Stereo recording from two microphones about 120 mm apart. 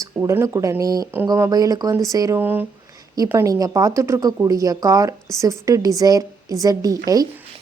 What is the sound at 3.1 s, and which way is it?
Speech, 25° right (ahead or behind).